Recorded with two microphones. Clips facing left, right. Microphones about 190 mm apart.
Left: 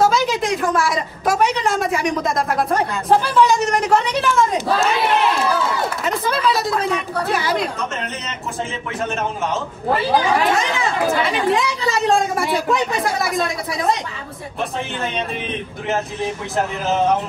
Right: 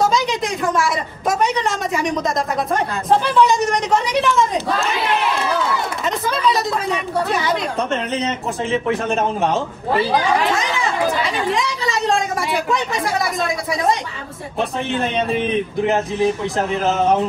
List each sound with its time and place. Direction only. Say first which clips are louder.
0.0 s a sound: left 1 dB; 5° left (ahead or behind)
3.1 s a woman's voice: even; centre (ahead or behind)
6.0 s chatter: right 1 dB; 5° left (ahead or behind)
7.2 s speech: right 2 dB; centre (ahead or behind)
8.8 s a man's voice: right 2 dB; 35° right (ahead or behind)
11.2 s speech: left 2 dB; centre (ahead or behind)